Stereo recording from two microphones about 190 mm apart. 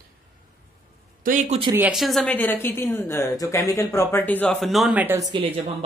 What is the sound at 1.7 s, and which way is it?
A woman's voice, 5° right (ahead or behind).